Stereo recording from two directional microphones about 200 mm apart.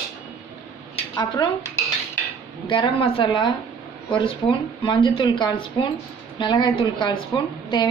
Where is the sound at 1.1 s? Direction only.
15° left (ahead or behind).